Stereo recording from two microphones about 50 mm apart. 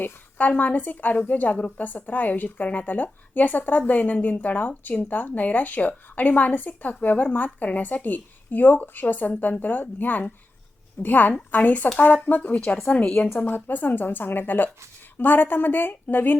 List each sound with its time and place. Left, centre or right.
0.0 s a woman's voice: left
13.4 s a woman's voice: left